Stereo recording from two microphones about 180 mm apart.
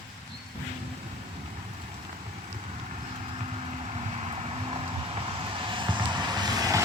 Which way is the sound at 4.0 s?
35° right (ahead or behind).